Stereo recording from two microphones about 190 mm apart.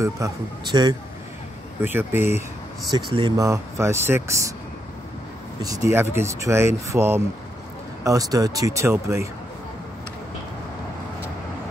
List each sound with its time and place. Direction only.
0.0 s speech: 20° right (ahead or behind)
1.8 s speech: 10° right (ahead or behind)
5.6 s speech: 20° right (ahead or behind)